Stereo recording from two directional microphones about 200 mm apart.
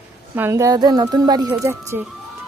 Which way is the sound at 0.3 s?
15° right (ahead or behind).